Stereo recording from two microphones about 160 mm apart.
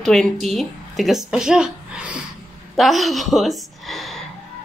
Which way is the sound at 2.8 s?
Centre (ahead or behind).